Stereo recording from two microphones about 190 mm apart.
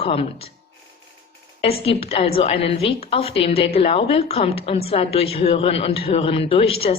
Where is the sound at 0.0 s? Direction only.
30° left (ahead or behind).